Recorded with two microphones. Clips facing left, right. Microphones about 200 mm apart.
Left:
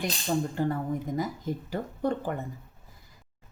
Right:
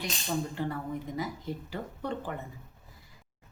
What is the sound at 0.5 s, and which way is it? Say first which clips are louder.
Speech: left 5 dB; 45° left (ahead or behind).